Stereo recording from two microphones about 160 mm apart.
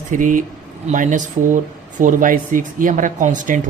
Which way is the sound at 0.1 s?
55° right (ahead or behind).